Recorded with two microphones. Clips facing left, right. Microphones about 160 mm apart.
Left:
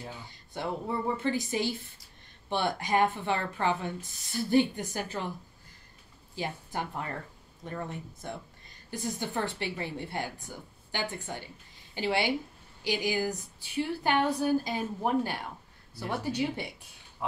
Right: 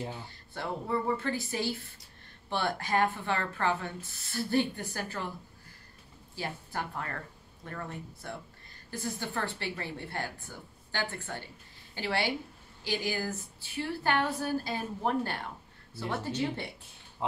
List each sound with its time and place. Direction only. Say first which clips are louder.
0.3 s a woman's voice: left 2 dB; 15° left (ahead or behind)
6.3 s a woman's voice: left 2 dB; 20° left (ahead or behind)